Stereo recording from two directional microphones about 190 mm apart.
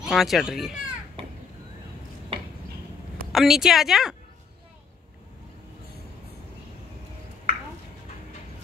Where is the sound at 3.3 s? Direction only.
Centre (ahead or behind).